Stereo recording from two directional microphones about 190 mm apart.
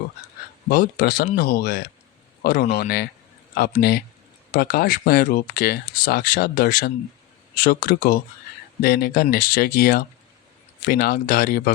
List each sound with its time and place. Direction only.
0.7 s speech: 50° left (ahead or behind)